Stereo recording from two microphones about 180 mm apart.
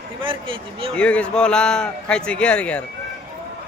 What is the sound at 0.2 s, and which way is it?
Speech, 30° right (ahead or behind).